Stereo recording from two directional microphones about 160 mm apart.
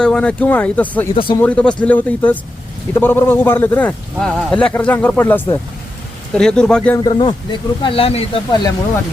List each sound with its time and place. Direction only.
0.0 s speech: 5° left (ahead or behind)
1.1 s speech: 35° left (ahead or behind)
1.4 s speech: 10° left (ahead or behind)
7.0 s speech: 30° left (ahead or behind)